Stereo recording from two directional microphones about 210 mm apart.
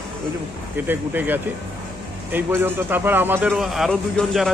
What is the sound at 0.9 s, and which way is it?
A man's voice, 10° right (ahead or behind).